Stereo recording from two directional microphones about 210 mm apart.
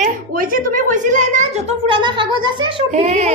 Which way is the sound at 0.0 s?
40° right (ahead or behind).